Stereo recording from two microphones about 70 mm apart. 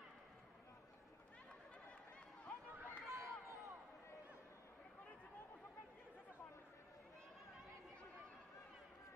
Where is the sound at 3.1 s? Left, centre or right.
Right.